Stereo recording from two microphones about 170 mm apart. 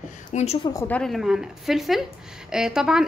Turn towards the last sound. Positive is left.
turn(degrees=-5)  # may be behind; listen again after turning